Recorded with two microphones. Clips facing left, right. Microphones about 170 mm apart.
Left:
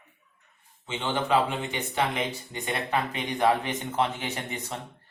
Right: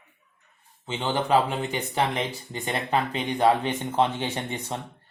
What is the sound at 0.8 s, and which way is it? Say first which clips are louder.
Speech: right 2 dB; 35° right (ahead or behind).